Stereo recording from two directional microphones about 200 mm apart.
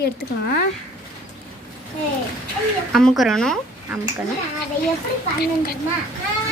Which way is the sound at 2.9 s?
Centre (ahead or behind).